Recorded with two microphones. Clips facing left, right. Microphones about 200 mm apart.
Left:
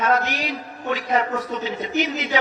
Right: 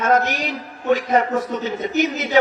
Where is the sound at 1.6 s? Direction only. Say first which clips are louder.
Right 3 dB; 45° right (ahead or behind).